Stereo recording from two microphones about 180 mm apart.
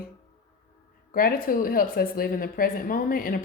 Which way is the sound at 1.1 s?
50° left (ahead or behind).